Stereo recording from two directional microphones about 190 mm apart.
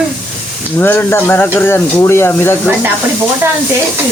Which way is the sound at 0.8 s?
10° left (ahead or behind).